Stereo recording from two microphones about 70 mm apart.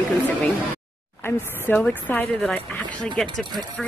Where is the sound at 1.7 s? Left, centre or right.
Left.